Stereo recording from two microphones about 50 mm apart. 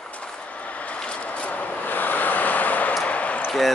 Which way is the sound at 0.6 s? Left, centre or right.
Left.